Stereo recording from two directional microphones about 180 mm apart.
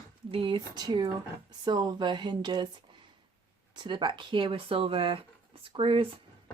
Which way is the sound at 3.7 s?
25° right (ahead or behind).